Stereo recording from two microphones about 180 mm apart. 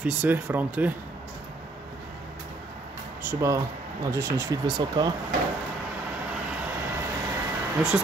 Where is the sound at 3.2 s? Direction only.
15° right (ahead or behind).